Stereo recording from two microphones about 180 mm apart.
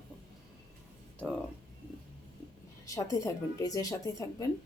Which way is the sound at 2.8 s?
20° left (ahead or behind).